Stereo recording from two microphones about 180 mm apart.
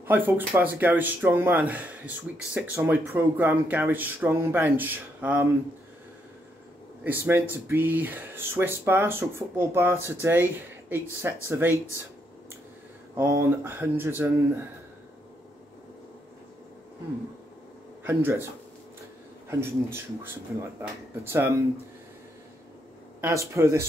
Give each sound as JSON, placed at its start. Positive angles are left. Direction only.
{"t": 0.0, "sound": "speech", "side_deg": -10}
{"t": 7.0, "sound": "speech", "side_deg": -10}
{"t": 13.1, "sound": "speech", "side_deg": -15}
{"t": 18.0, "sound": "speech", "side_deg": -15}
{"t": 21.2, "sound": "speech", "side_deg": -15}
{"t": 23.2, "sound": "speech", "side_deg": -15}